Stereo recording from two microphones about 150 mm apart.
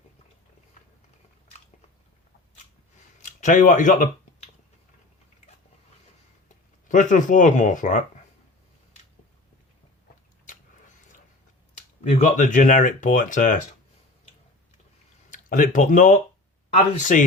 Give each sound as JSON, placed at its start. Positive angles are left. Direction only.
{"t": 3.2, "sound": "speech", "side_deg": 60}
{"t": 6.8, "sound": "speech", "side_deg": 60}
{"t": 12.2, "sound": "speech", "side_deg": 55}
{"t": 15.3, "sound": "speech", "side_deg": 65}